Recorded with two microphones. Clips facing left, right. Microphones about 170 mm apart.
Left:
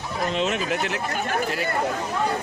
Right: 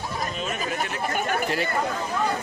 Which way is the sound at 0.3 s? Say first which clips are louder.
Left 5 dB; 85° left.